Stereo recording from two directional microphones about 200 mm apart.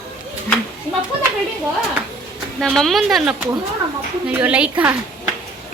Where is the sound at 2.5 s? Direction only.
Centre (ahead or behind).